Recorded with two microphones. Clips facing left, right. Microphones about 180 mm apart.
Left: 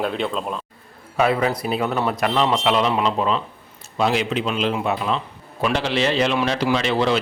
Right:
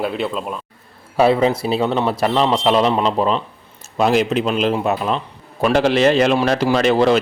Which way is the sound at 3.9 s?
45° right (ahead or behind).